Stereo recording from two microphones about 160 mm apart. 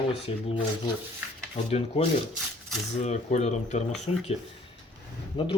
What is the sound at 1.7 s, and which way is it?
Speech, 40° left (ahead or behind).